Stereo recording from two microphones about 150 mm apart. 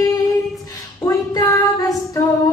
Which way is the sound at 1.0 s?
20° left (ahead or behind).